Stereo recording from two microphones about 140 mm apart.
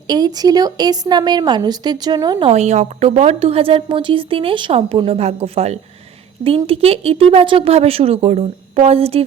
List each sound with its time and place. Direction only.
0.1 s a woman's voice: 30° right (ahead or behind)
2.5 s a woman's voice: 55° right (ahead or behind)